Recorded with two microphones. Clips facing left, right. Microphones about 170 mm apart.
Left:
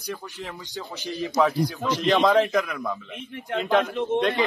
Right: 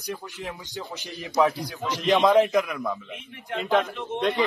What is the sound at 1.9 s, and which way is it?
A man's voice, centre (ahead or behind).